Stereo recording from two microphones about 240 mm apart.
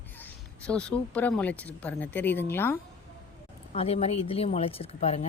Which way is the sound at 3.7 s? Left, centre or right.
Left.